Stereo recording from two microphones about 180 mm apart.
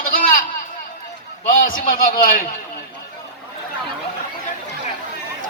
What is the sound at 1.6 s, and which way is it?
Speech, 50° left (ahead or behind).